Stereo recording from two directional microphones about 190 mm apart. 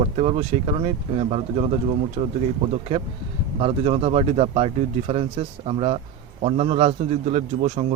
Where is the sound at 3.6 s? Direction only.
30° right (ahead or behind).